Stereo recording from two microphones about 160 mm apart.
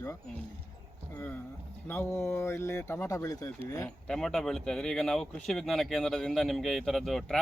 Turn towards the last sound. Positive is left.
turn(degrees=0)  # may be behind; listen again after turning